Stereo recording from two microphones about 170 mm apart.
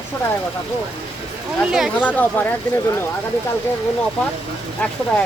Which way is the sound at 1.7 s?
5° right (ahead or behind).